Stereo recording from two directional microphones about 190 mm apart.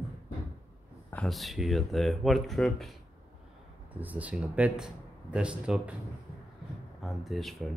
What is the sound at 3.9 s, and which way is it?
Speech, 10° right (ahead or behind).